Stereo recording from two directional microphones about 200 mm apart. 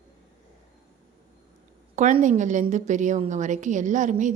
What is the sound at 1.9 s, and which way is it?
A woman's voice, 40° right (ahead or behind).